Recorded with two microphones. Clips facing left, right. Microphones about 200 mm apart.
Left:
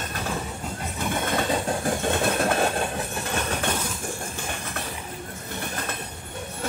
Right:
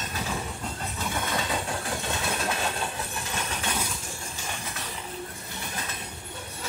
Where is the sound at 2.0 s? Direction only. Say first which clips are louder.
Left 9 dB; 55° left (ahead or behind).